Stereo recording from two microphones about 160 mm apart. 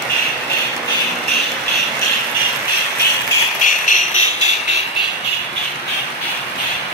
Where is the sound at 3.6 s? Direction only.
50° left (ahead or behind).